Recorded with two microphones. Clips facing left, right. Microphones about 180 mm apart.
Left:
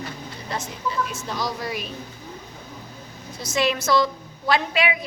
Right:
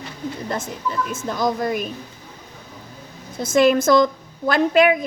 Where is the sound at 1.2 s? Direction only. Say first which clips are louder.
Right 7 dB; 50° right (ahead or behind).